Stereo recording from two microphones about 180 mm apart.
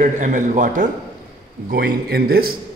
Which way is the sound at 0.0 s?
45° right (ahead or behind).